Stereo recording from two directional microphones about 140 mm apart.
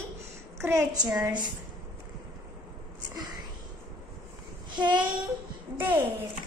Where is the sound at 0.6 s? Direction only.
20° right (ahead or behind).